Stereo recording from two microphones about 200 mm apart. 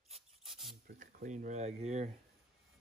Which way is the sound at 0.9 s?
45° right (ahead or behind).